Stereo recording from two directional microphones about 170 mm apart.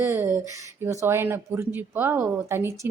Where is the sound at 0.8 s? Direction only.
15° right (ahead or behind).